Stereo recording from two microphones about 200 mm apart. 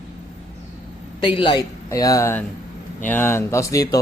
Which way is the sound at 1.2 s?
25° left (ahead or behind).